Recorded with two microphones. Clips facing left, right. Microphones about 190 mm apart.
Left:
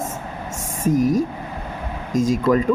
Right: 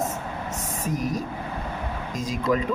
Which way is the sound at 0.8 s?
45° left (ahead or behind).